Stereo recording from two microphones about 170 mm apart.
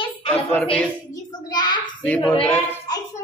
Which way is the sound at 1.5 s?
25° left (ahead or behind).